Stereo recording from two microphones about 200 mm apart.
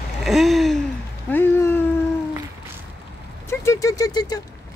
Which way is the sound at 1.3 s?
10° left (ahead or behind).